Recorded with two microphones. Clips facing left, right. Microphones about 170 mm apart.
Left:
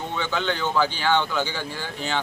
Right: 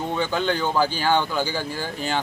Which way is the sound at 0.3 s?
40° right (ahead or behind).